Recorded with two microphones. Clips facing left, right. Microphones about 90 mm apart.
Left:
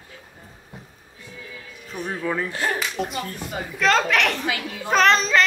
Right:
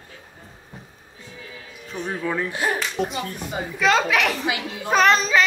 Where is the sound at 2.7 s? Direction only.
Centre (ahead or behind).